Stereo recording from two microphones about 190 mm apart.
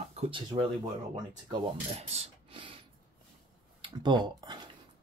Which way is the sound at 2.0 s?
35° right (ahead or behind).